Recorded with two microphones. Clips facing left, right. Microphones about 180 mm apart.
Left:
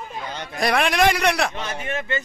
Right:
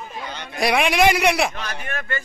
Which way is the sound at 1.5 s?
25° left (ahead or behind).